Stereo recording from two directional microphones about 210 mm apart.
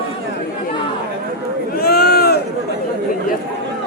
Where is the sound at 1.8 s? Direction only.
50° left (ahead or behind).